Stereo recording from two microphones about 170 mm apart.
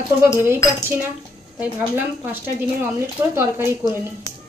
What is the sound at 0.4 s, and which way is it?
A woman's voice, 15° right (ahead or behind).